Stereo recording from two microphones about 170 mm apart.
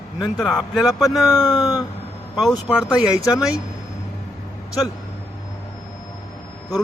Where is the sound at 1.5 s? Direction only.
20° left (ahead or behind).